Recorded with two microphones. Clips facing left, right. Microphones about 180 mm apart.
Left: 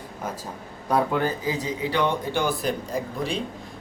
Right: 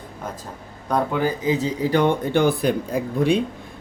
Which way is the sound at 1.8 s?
45° right (ahead or behind).